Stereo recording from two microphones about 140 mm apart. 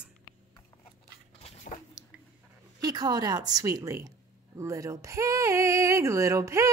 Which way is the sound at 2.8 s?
30° right (ahead or behind).